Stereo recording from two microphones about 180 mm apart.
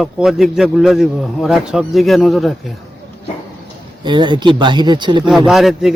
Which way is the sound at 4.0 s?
25° right (ahead or behind).